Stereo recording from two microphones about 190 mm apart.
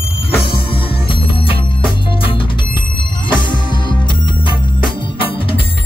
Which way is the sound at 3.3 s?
25° left (ahead or behind).